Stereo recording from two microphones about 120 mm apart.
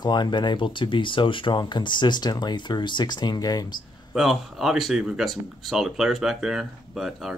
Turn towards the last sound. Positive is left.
turn(degrees=-5)  # may be behind; listen again after turning